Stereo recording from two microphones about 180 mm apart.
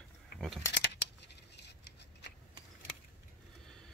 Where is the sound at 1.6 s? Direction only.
70° left (ahead or behind).